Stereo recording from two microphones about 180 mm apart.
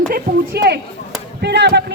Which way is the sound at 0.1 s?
60° right (ahead or behind).